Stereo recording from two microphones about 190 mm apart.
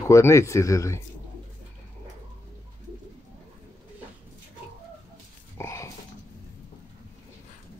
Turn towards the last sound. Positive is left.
turn(degrees=15)  # may be behind; listen again after turning